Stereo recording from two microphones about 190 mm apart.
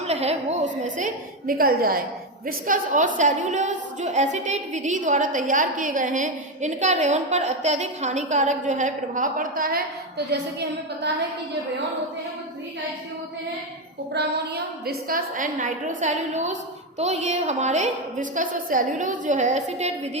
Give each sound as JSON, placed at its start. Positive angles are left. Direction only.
{"t": 0.1, "sound": "a woman's voice", "side_deg": -35}
{"t": 14.1, "sound": "a woman's voice", "side_deg": -60}